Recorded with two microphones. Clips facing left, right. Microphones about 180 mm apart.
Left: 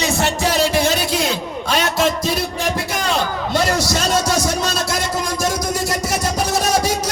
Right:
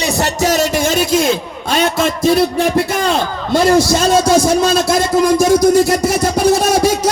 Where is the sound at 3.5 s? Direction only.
55° right (ahead or behind).